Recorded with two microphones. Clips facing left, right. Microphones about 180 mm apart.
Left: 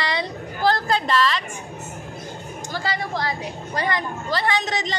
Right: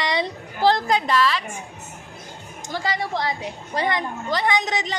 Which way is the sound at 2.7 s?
20° right (ahead or behind).